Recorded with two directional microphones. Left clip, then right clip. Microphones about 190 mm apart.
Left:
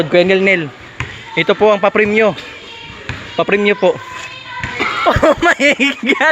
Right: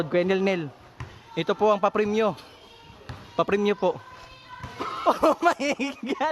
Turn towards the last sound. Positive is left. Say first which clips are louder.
# left 15 dB
turn(degrees=-10)  # may be behind; listen again after turning